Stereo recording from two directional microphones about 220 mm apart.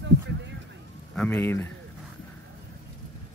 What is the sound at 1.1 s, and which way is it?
Speech, 5° left (ahead or behind).